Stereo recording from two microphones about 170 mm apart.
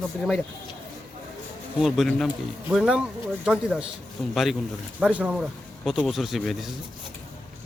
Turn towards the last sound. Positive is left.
turn(degrees=0)  # may be behind; listen again after turning